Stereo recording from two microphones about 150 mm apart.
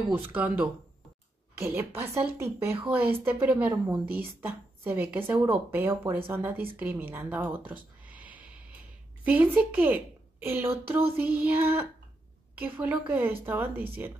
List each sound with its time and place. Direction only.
0.3 s a woman's voice: 10° right (ahead or behind)